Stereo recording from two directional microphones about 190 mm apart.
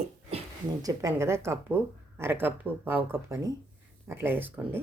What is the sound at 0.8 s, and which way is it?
Speech, 15° right (ahead or behind).